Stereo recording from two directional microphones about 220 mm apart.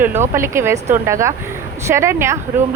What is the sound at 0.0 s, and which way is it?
Speech, 10° right (ahead or behind).